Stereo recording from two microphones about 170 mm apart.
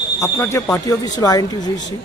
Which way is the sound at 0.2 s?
15° left (ahead or behind).